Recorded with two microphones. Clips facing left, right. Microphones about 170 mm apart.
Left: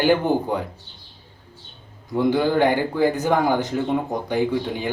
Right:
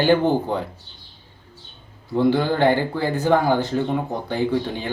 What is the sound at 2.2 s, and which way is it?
Speech, 15° left (ahead or behind).